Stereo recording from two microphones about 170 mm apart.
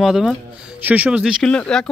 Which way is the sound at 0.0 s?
Centre (ahead or behind).